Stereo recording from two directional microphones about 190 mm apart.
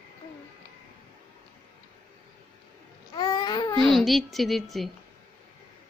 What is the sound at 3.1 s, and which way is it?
Babbling, 20° left (ahead or behind).